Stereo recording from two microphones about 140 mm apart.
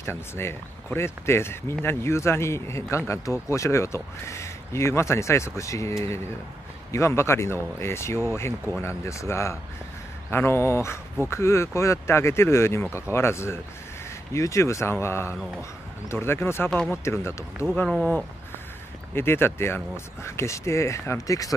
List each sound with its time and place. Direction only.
0.0 s speech: 15° left (ahead or behind)
17.8 s speech: 5° left (ahead or behind)
19.1 s speech: 15° left (ahead or behind)